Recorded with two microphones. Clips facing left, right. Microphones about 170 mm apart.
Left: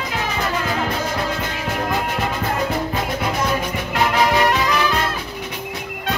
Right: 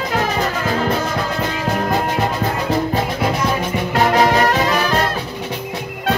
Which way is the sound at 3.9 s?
40° right (ahead or behind).